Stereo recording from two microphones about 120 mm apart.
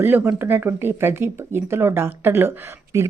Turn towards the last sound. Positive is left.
turn(degrees=-20)  # may be behind; listen again after turning